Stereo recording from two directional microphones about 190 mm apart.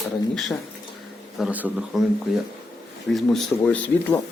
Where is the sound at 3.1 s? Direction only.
5° left (ahead or behind).